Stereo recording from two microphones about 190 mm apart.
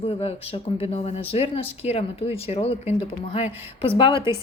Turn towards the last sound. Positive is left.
turn(degrees=25)  # may be behind; listen again after turning